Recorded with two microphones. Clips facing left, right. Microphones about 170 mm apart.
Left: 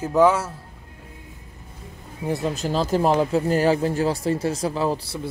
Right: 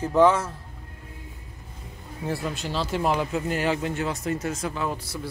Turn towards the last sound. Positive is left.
turn(degrees=30)  # may be behind; listen again after turning